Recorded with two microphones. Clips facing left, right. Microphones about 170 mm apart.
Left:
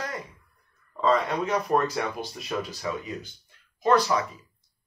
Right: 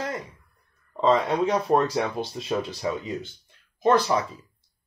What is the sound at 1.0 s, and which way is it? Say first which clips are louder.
Speech: right 3 dB; 25° right (ahead or behind).